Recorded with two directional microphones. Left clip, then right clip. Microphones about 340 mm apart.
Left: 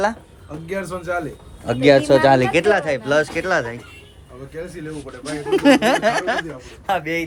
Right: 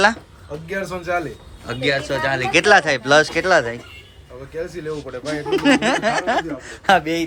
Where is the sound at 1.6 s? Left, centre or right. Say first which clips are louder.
Left 7 dB; centre.